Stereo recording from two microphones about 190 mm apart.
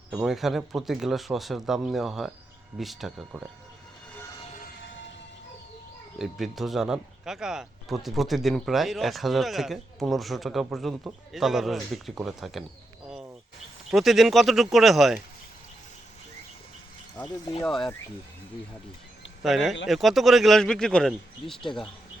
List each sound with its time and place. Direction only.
0.1 s speech: 5° right (ahead or behind)
6.1 s speech: centre (ahead or behind)
13.1 s a sound: 5° right (ahead or behind)
13.9 s speech: centre (ahead or behind)
17.7 s speech: centre (ahead or behind)
19.4 s speech: centre (ahead or behind)